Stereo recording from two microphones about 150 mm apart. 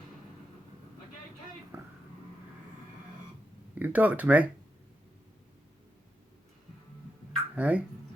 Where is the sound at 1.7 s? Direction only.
15° right (ahead or behind).